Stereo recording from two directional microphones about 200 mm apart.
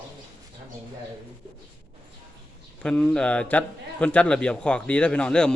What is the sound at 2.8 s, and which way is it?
A man's voice, 5° left (ahead or behind).